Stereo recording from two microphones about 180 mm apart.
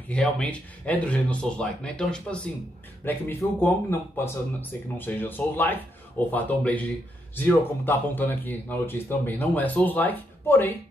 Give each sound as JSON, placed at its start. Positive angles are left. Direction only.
{"t": 0.1, "sound": "speech", "side_deg": 5}